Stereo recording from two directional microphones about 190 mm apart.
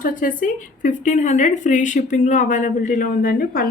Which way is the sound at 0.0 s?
45° left (ahead or behind).